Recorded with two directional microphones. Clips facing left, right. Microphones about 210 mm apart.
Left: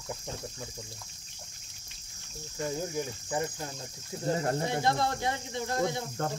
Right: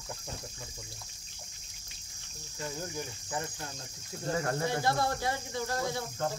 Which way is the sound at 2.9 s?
15° left (ahead or behind).